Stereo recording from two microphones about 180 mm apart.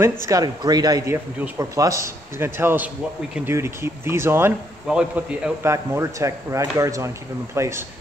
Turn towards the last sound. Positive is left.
turn(degrees=-15)  # may be behind; listen again after turning